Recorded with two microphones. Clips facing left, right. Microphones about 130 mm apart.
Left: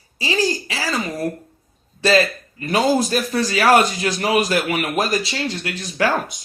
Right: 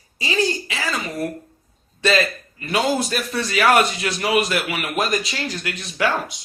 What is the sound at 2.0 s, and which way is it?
A man's voice, 35° left (ahead or behind).